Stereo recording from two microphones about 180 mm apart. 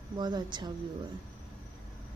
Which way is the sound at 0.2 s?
25° right (ahead or behind).